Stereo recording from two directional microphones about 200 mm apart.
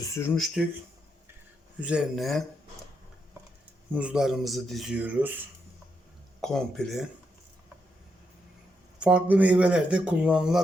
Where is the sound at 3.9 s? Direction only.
5° right (ahead or behind).